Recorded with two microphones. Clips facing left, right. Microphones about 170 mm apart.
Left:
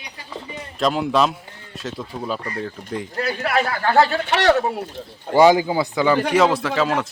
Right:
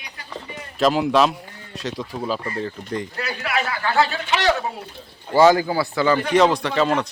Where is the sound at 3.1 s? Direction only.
45° left (ahead or behind); by 4.8 s 65° left (ahead or behind).